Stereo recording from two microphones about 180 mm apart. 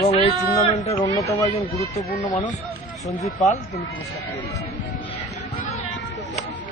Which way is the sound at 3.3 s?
40° left (ahead or behind).